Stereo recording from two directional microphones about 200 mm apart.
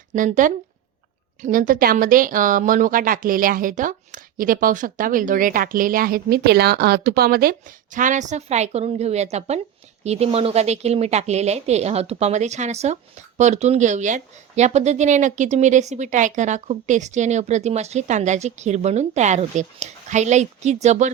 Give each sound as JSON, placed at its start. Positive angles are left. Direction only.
{"t": 0.1, "sound": "speech", "side_deg": -35}
{"t": 7.9, "sound": "speech", "side_deg": -40}